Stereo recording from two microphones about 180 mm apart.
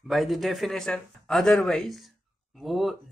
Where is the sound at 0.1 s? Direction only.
Centre (ahead or behind).